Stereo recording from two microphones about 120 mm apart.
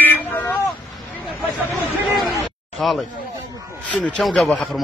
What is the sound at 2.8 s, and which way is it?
Speech, 5° left (ahead or behind).